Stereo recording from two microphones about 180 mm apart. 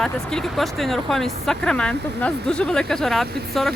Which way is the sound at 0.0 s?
5° left (ahead or behind).